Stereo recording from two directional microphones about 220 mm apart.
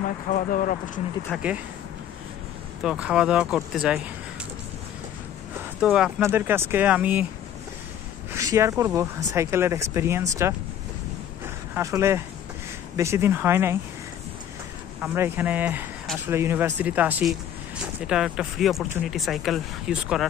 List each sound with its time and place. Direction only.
0.3 s speech: 40° left (ahead or behind)
1.3 s speech: 5° right (ahead or behind)
2.8 s speech: 5° right (ahead or behind)
5.8 s speech: 5° right (ahead or behind)
8.3 s speech: 15° right (ahead or behind)
11.4 s a sound: 10° right (ahead or behind)
12.9 s speech: 10° right (ahead or behind)
15.0 s speech: 10° right (ahead or behind)